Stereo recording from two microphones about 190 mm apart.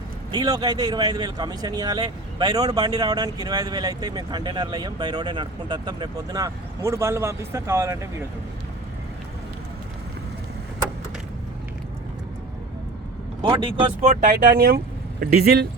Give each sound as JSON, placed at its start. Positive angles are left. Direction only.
{"t": 0.3, "sound": "speech", "side_deg": -20}
{"t": 13.4, "sound": "speech", "side_deg": -25}
{"t": 14.1, "sound": "speech", "side_deg": -45}